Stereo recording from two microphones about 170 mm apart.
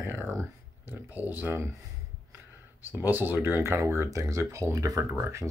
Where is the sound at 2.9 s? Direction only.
10° right (ahead or behind).